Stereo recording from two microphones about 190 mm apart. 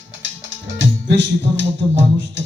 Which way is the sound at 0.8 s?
70° right (ahead or behind).